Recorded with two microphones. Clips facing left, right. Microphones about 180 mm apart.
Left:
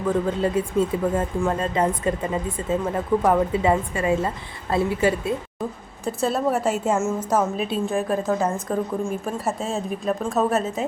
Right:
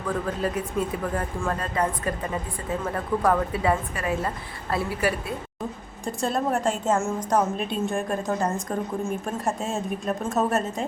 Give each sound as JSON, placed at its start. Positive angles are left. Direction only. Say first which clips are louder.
{"t": 0.3, "sound": "a woman's voice", "louder": "left 5 dB", "side_deg": 25}
{"t": 6.1, "sound": "a woman's voice", "louder": "left 3 dB", "side_deg": 5}